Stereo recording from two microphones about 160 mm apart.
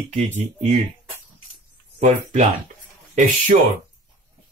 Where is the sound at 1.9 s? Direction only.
45° right (ahead or behind).